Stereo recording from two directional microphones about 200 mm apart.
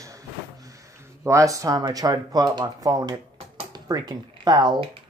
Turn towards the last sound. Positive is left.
turn(degrees=-20)  # may be behind; listen again after turning